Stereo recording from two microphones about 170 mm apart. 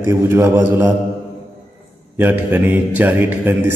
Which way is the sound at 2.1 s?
10° right (ahead or behind).